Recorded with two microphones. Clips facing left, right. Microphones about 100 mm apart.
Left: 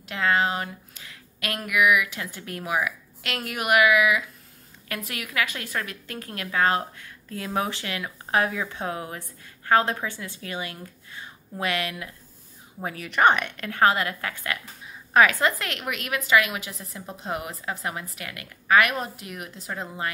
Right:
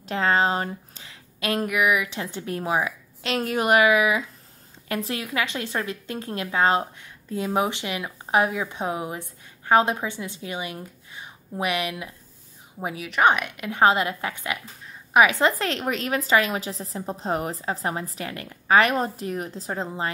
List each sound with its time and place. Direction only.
0.1 s a woman's voice: 30° right (ahead or behind)
12.8 s a woman's voice: 5° right (ahead or behind)
13.7 s a woman's voice: 20° right (ahead or behind)